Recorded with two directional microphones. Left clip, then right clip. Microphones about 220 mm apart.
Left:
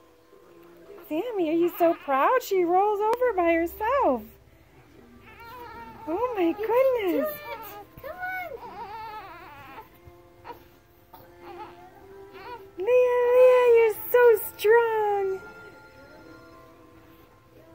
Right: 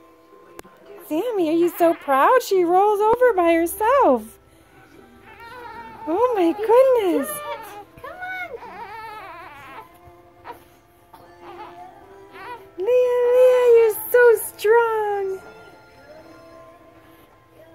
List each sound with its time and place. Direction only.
1.0 s a woman's voice: 25° right (ahead or behind)
6.0 s a woman's voice: 25° right (ahead or behind)
8.0 s a sound: 10° left (ahead or behind)
8.5 s baby cry: centre (ahead or behind)
11.4 s music: centre (ahead or behind)
14.6 s a sound: centre (ahead or behind)